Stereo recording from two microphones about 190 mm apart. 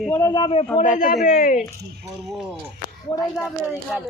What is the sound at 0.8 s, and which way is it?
Speech, 45° left (ahead or behind).